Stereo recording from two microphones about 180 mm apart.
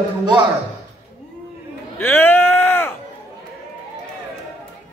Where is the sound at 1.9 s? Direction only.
10° left (ahead or behind).